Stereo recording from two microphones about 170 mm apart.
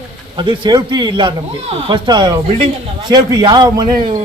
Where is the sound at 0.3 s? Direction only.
25° right (ahead or behind).